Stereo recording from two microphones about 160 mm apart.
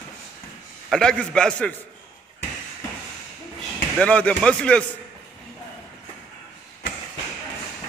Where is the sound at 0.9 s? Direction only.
5° left (ahead or behind).